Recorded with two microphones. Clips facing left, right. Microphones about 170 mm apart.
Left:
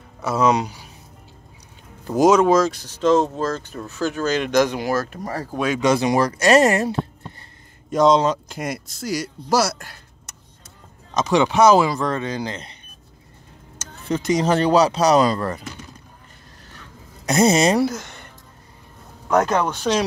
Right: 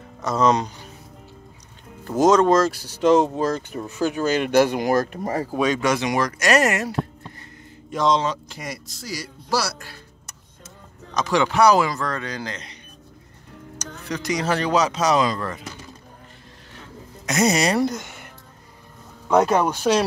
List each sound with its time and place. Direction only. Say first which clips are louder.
0.2 s speech: left 1 dB; 10° left (ahead or behind)
2.0 s speech: left 1 dB; 10° left (ahead or behind); by 5.6 s 15° right (ahead or behind)
5.9 s speech: left 4 dB; 35° left (ahead or behind)
7.9 s speech: left 5 dB; 45° left (ahead or behind)
11.1 s speech: left 2 dB; 20° left (ahead or behind)
14.0 s speech: left 5 dB; 25° left (ahead or behind)
17.3 s speech: left 4 dB; 30° left (ahead or behind)
17.7 s speech: left 2 dB; 5° left (ahead or behind)